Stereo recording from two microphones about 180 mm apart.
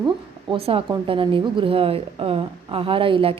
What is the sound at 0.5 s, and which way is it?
A woman's voice, 30° right (ahead or behind).